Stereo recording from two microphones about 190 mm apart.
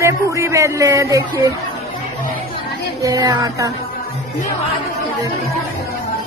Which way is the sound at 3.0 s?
20° right (ahead or behind).